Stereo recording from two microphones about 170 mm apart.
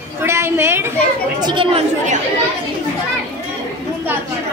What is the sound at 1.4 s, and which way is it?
Speech, 30° right (ahead or behind).